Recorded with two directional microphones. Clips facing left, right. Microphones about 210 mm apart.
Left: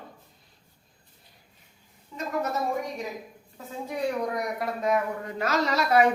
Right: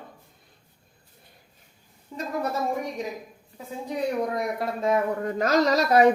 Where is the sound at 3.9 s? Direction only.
25° right (ahead or behind).